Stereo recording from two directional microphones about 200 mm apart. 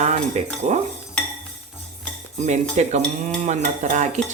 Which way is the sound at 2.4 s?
35° right (ahead or behind).